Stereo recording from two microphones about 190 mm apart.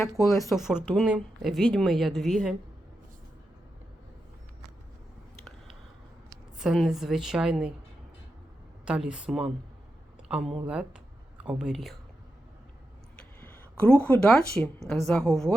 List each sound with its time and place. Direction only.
0.0 s speech: 15° left (ahead or behind)
0.5 s a woman's voice: centre (ahead or behind)
6.6 s a woman's voice: centre (ahead or behind)
8.8 s a woman's voice: 5° right (ahead or behind)
13.1 s a sound: 10° left (ahead or behind)
14.0 s a woman's voice: 5° left (ahead or behind)